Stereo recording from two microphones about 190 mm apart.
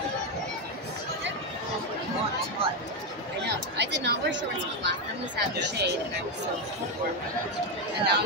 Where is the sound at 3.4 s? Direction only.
60° right (ahead or behind).